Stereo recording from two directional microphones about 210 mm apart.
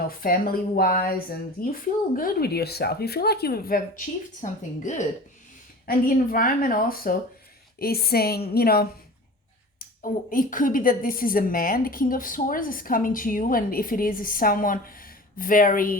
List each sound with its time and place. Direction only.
0.2 s speech: 45° left (ahead or behind)